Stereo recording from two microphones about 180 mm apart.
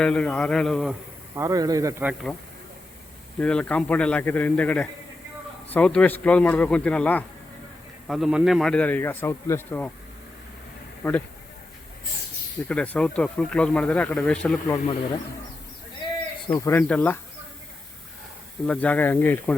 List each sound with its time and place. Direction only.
0.0 s speech: 5° left (ahead or behind)
1.4 s speech: 20° right (ahead or behind)
3.3 s a man's voice: 5° left (ahead or behind)
11.0 s a man's voice: 10° left (ahead or behind)
12.6 s speech: 5° left (ahead or behind)
16.5 s a man's voice: 15° left (ahead or behind)
18.6 s a man's voice: 5° left (ahead or behind)